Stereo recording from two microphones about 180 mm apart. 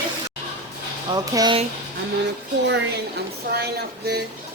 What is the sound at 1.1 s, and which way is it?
Speech, 20° right (ahead or behind).